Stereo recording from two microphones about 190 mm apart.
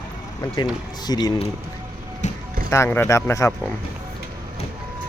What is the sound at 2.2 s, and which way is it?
Music, 40° left (ahead or behind).